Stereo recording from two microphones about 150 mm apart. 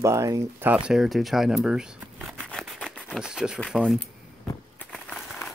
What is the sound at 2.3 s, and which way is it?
Scissors, 5° left (ahead or behind).